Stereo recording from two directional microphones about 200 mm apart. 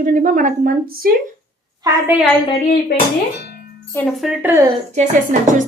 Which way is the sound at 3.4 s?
55° left (ahead or behind).